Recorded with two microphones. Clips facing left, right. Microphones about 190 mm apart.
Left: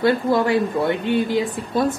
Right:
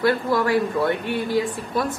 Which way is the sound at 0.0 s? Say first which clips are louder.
Left 3 dB; 25° left (ahead or behind).